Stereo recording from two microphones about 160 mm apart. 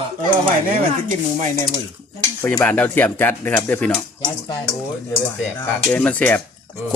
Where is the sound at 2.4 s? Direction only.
15° left (ahead or behind).